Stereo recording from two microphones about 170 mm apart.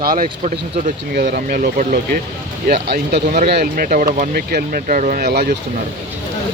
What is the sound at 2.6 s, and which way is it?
Speech, 70° right (ahead or behind).